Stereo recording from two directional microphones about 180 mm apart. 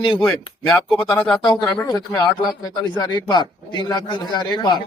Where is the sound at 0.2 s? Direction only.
Centre (ahead or behind).